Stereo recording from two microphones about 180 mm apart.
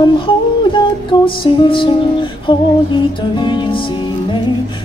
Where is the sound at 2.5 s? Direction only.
30° left (ahead or behind).